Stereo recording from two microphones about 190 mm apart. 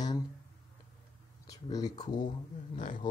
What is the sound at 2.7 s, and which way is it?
Speech, 45° left (ahead or behind).